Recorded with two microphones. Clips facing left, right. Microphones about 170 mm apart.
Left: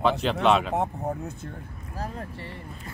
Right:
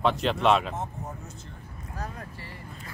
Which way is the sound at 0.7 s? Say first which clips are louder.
Left 8 dB; 60° left (ahead or behind).